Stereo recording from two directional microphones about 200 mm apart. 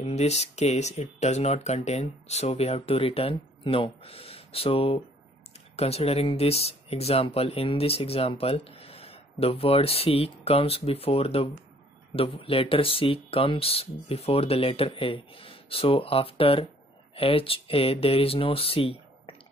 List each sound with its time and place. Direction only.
0.0 s speech: 35° left (ahead or behind)